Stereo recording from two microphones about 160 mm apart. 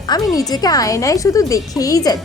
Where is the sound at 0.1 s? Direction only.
25° left (ahead or behind).